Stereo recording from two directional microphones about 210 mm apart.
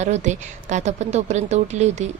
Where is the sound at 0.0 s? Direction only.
35° right (ahead or behind).